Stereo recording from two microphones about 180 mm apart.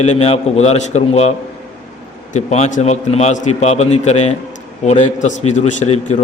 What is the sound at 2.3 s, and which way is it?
A man's voice, 40° left (ahead or behind).